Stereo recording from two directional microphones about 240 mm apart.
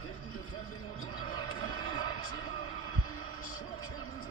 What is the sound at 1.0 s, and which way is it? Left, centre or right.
Music, centre.